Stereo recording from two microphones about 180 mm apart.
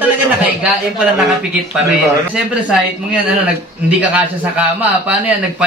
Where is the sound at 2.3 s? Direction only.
5° right (ahead or behind).